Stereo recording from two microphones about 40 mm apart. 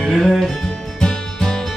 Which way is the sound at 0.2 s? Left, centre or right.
Centre.